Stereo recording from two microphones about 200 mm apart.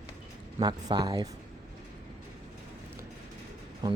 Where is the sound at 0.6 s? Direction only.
20° right (ahead or behind).